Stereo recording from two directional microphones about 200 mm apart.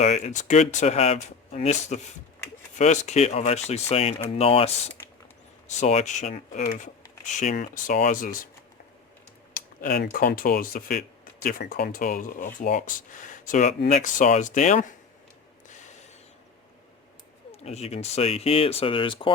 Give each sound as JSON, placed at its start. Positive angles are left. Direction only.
{"t": 0.0, "sound": "speech", "side_deg": 35}
{"t": 9.6, "sound": "speech", "side_deg": 45}
{"t": 17.5, "sound": "speech", "side_deg": 30}